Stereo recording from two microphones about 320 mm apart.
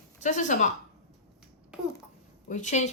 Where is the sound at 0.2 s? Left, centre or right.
Left.